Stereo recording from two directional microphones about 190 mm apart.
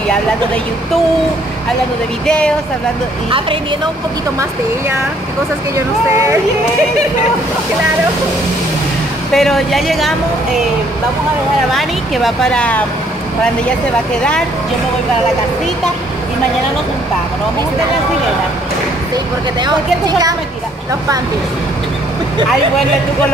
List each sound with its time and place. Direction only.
2.2 s speech: 5° left (ahead or behind)
3.3 s a woman's voice: 25° right (ahead or behind)
4.4 s speech: 15° right (ahead or behind)
6.1 s speech: 15° right (ahead or behind)
9.3 s speech: centre (ahead or behind)
11.7 s speech: centre (ahead or behind)
19.6 s a woman's voice: 20° right (ahead or behind)